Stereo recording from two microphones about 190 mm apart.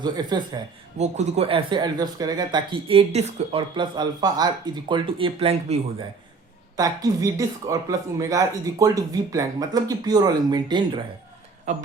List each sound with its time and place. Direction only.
0.0 s speech: 20° right (ahead or behind)
0.9 s speech: 35° right (ahead or behind)
6.7 s speech: 20° right (ahead or behind)
11.7 s speech: 35° right (ahead or behind)